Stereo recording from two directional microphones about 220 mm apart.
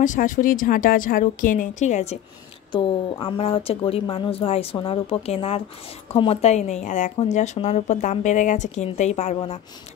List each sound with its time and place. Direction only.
0.0 s a woman's voice: 35° left (ahead or behind)